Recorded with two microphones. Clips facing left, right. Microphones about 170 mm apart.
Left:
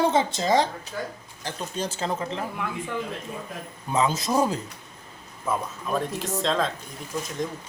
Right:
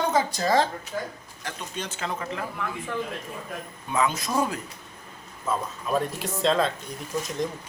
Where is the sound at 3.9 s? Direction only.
25° left (ahead or behind).